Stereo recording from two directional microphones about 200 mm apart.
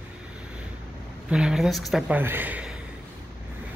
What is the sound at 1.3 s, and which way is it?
Speech, 5° right (ahead or behind).